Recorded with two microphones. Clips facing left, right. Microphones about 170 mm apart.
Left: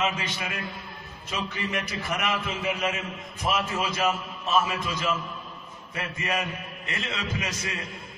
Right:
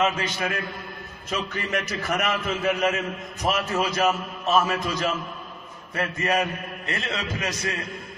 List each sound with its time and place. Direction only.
0.0 s a man's voice: 45° right (ahead or behind)